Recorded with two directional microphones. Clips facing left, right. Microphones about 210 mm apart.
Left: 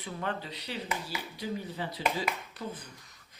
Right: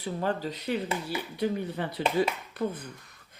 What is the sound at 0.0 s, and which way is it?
Speech, 40° right (ahead or behind).